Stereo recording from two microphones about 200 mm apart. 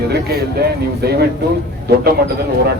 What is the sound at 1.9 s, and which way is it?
Speech, 55° right (ahead or behind).